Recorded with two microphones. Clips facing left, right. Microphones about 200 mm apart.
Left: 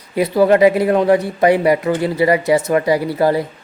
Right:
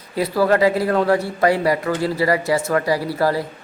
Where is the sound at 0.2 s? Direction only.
20° left (ahead or behind).